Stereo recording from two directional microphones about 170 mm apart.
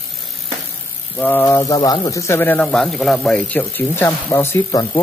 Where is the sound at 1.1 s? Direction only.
10° left (ahead or behind).